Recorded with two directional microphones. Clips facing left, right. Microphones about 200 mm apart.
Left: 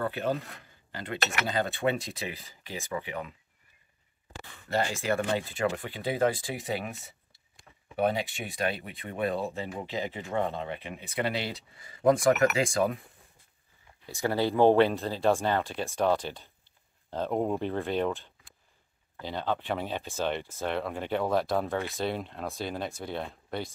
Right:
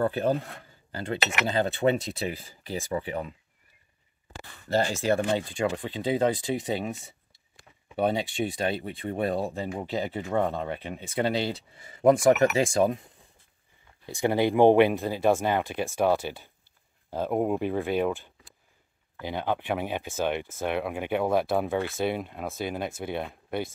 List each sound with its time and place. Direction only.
0.0 s speech: 30° right (ahead or behind)
1.5 s speech: 30° right (ahead or behind)
4.7 s speech: 35° right (ahead or behind)
5.3 s speech: 20° right (ahead or behind)
10.1 s speech: 45° right (ahead or behind); by 13.0 s 30° right (ahead or behind)
14.0 s speech: 20° right (ahead or behind)